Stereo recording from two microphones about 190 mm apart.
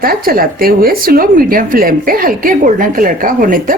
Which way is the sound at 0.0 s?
50° right (ahead or behind).